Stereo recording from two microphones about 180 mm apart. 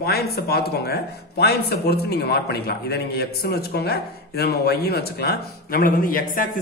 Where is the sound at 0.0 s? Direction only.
60° left (ahead or behind).